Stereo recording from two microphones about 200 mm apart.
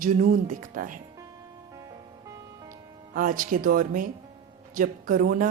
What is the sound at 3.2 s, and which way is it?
Speech, 45° right (ahead or behind).